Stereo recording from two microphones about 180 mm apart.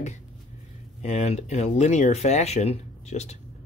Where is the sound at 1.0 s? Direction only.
40° left (ahead or behind).